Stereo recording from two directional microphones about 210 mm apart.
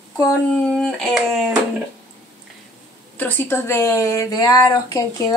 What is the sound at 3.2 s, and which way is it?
Speech, 10° left (ahead or behind).